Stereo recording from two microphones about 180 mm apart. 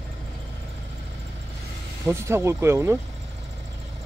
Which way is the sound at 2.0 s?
15° right (ahead or behind).